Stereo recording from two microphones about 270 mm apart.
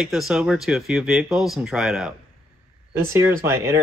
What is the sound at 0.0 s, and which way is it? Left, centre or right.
Speech, centre.